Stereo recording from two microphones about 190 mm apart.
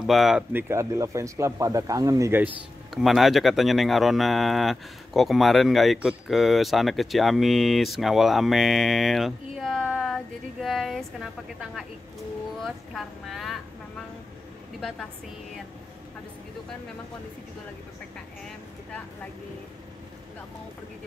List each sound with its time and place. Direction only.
0.0 s speech: centre (ahead or behind)
2.9 s speech: centre (ahead or behind)
12.6 s speech: centre (ahead or behind)